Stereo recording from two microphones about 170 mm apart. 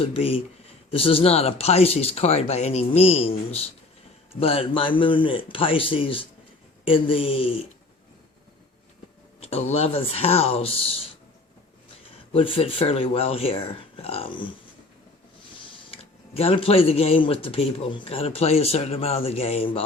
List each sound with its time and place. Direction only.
0.0 s speech: 35° left (ahead or behind)
9.4 s speech: 40° left (ahead or behind)
12.3 s speech: 35° left (ahead or behind)
15.5 s speech: 30° left (ahead or behind)